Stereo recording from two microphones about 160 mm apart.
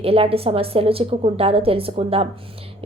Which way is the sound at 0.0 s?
35° right (ahead or behind).